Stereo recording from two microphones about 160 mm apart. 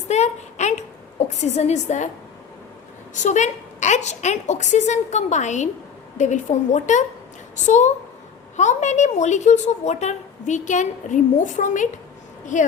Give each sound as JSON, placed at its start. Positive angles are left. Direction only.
{"t": 0.1, "sound": "a sound", "side_deg": 45}
{"t": 1.3, "sound": "a woman's voice", "side_deg": 45}
{"t": 3.2, "sound": "a woman's voice", "side_deg": 50}